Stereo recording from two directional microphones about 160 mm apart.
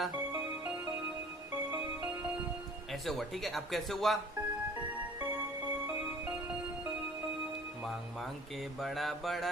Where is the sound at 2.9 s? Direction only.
Centre (ahead or behind).